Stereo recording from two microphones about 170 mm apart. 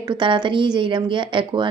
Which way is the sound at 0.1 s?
30° right (ahead or behind).